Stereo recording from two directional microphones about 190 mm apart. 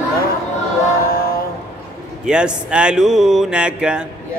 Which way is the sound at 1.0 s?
50° left (ahead or behind).